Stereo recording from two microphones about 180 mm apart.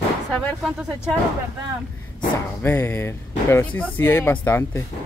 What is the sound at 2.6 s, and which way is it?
Speech, 15° left (ahead or behind).